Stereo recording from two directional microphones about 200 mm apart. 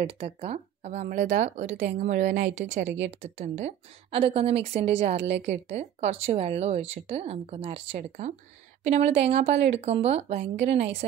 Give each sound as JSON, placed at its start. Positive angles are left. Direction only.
{"t": 0.0, "sound": "speech", "side_deg": -30}
{"t": 3.1, "sound": "speech", "side_deg": -30}